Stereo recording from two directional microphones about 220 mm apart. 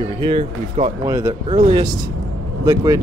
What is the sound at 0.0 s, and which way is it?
Speech, 25° right (ahead or behind).